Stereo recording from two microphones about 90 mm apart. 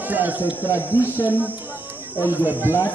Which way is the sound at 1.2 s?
20° right (ahead or behind).